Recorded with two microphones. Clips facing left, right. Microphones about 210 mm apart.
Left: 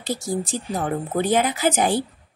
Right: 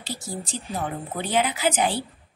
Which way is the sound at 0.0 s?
45° left (ahead or behind).